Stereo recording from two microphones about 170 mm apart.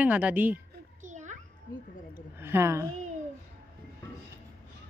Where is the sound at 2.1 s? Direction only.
15° right (ahead or behind).